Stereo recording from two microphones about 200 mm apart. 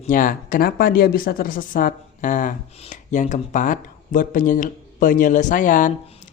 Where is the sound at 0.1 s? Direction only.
45° left (ahead or behind).